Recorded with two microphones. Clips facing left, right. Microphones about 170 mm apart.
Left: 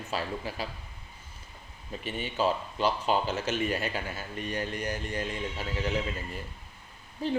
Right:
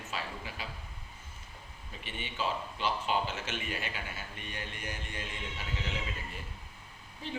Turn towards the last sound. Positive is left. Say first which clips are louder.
# left 11 dB
turn(degrees=40)  # may be behind; listen again after turning